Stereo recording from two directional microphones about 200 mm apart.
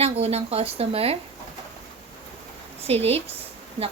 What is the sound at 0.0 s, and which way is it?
Speech, 30° right (ahead or behind).